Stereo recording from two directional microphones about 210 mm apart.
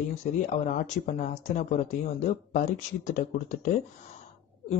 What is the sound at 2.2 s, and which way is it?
A man's voice, 35° left (ahead or behind).